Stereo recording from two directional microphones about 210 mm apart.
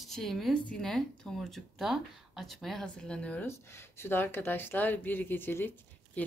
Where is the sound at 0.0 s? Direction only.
Centre (ahead or behind).